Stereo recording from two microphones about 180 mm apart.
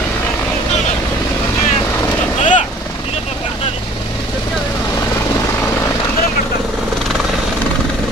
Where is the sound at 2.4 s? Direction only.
40° left (ahead or behind).